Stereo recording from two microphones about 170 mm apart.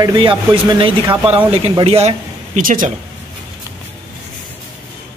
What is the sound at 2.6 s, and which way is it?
Speech, 50° right (ahead or behind).